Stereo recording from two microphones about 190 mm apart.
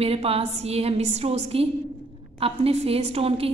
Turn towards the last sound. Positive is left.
turn(degrees=-30)  # may be behind; listen again after turning